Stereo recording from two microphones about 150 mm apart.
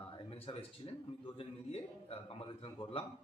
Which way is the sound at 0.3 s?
40° left (ahead or behind).